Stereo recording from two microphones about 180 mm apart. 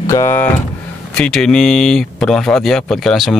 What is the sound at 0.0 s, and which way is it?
Speech, 15° left (ahead or behind).